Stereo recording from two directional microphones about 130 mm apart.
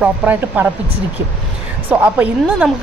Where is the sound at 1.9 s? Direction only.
10° right (ahead or behind).